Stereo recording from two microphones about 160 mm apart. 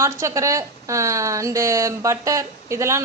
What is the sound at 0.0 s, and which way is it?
Speech, 20° right (ahead or behind).